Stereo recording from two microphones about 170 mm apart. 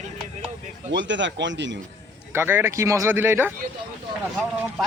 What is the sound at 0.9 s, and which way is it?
Speech, 90° right.